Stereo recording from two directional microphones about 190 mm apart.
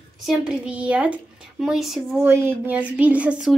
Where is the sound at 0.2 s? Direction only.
Centre (ahead or behind).